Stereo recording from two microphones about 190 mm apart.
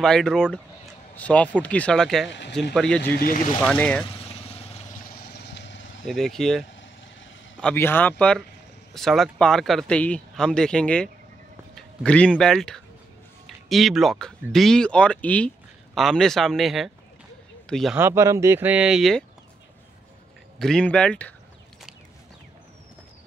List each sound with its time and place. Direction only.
0.0 s speech: centre (ahead or behind)
2.2 s speech: 65° left (ahead or behind)
2.7 s speech: centre (ahead or behind)
3.0 s speech: 50° left (ahead or behind)
3.6 s speech: 5° left (ahead or behind)
4.0 s vehicle: 30° left (ahead or behind)
5.5 s vehicle: 70° left (ahead or behind)
6.0 s speech: centre (ahead or behind)
7.6 s speech: 10° left (ahead or behind)
17.9 s speech: 15° right (ahead or behind)
20.5 s speech: 5° left (ahead or behind)